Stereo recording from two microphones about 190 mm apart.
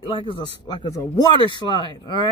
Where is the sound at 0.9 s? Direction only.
15° left (ahead or behind).